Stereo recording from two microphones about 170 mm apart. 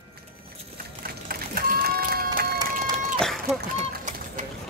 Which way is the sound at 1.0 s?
60° right (ahead or behind).